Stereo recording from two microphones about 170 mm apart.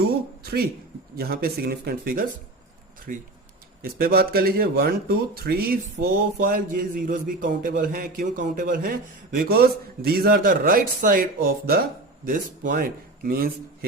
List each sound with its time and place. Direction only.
0.0 s a sound: 65° right (ahead or behind)
1.1 s speech: 65° right (ahead or behind)
3.9 s speech: 65° right (ahead or behind)